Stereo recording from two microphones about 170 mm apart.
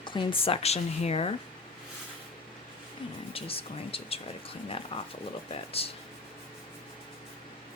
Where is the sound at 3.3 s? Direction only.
35° left (ahead or behind).